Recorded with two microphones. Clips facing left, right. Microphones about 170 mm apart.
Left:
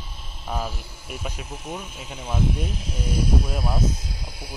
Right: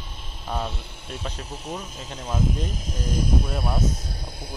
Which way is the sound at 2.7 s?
40° right (ahead or behind).